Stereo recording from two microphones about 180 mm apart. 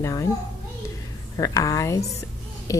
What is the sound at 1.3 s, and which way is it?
Speech, 20° left (ahead or behind).